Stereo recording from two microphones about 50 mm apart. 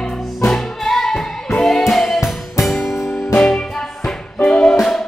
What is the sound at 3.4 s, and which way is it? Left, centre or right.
Music, centre.